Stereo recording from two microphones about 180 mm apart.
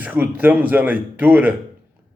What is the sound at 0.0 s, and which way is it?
A man's voice, 10° right (ahead or behind).